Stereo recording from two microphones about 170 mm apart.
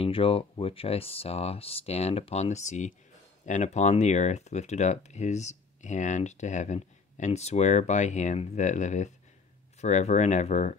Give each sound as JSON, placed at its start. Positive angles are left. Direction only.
{"t": 0.0, "sound": "speech", "side_deg": 35}